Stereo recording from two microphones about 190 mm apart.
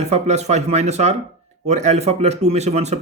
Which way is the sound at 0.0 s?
35° right (ahead or behind).